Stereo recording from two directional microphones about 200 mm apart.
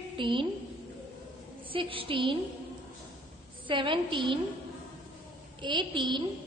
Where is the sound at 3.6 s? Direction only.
25° right (ahead or behind).